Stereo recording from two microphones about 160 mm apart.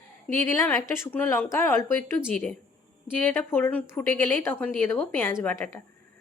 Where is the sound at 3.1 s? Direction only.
10° left (ahead or behind).